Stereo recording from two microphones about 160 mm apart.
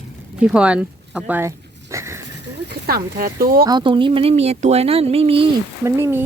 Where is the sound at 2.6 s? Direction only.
70° right (ahead or behind).